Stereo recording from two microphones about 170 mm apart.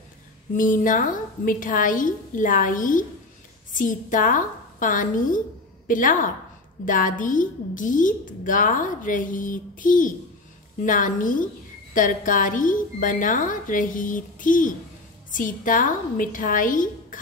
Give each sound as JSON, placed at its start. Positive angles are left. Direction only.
{"t": 0.6, "sound": "a woman's voice", "side_deg": 50}